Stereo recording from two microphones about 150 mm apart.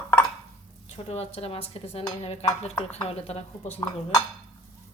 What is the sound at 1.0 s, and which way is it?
A woman's voice, 45° left (ahead or behind).